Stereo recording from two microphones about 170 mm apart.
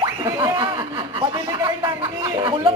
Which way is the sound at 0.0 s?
20° right (ahead or behind).